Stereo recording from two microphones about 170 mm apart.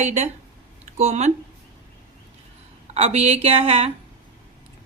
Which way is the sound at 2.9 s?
40° right (ahead or behind).